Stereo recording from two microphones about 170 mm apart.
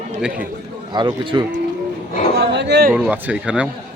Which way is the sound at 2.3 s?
85° right.